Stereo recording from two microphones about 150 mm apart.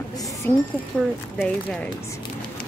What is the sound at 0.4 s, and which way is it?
Speech, 10° left (ahead or behind).